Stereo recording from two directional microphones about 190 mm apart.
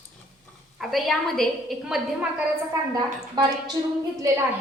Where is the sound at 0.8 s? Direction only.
Centre (ahead or behind).